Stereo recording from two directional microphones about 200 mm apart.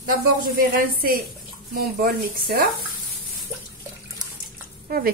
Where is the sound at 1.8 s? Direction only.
50° right (ahead or behind).